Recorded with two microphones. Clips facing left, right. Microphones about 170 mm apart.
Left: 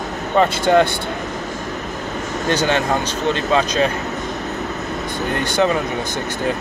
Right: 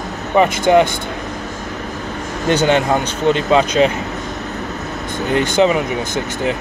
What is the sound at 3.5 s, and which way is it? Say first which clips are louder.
Speech: right 3 dB; 25° right (ahead or behind).